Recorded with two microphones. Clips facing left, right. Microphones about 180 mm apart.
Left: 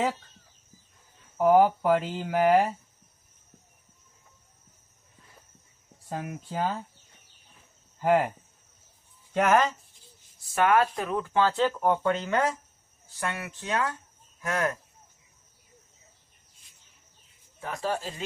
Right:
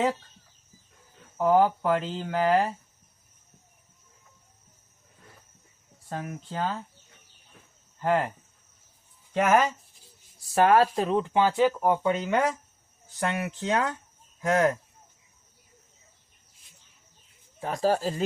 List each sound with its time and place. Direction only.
1.4 s speech: 10° left (ahead or behind)
6.1 s speech: 10° left (ahead or behind)
8.0 s speech: 10° left (ahead or behind)
9.3 s speech: 5° right (ahead or behind)
10.5 s speech: 35° right (ahead or behind)
17.6 s speech: 35° right (ahead or behind)